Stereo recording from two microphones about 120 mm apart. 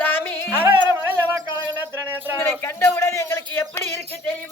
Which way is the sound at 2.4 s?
20° left (ahead or behind).